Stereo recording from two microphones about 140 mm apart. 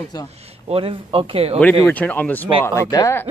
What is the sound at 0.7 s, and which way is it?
Speech, 40° right (ahead or behind).